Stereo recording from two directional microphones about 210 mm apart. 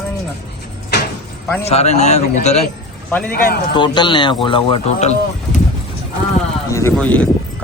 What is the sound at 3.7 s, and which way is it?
A man's voice, 20° left (ahead or behind).